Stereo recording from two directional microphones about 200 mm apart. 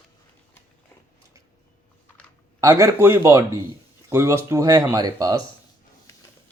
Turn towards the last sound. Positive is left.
turn(degrees=-20)  # may be behind; listen again after turning